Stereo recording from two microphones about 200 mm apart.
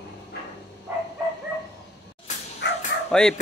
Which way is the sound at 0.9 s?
10° right (ahead or behind).